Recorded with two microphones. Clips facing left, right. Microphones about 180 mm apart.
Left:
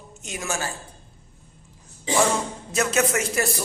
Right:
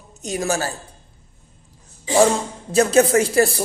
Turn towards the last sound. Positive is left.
turn(degrees=-35)  # may be behind; listen again after turning